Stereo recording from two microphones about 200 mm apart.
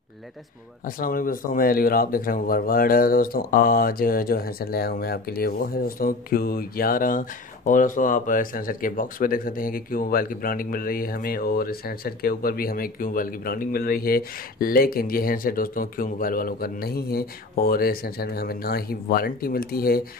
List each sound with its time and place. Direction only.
0.8 s speech: 45° left (ahead or behind)